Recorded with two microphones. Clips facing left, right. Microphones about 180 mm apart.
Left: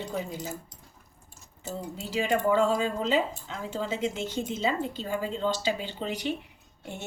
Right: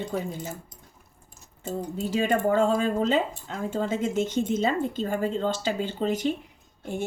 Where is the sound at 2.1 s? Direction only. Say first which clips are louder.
Right 1 dB; 50° right (ahead or behind).